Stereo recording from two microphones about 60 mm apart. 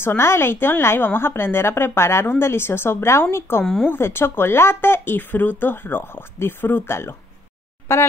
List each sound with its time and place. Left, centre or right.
0.0 s a woman's voice: left